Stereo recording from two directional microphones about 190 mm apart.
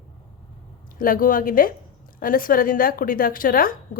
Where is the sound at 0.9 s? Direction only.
45° left (ahead or behind).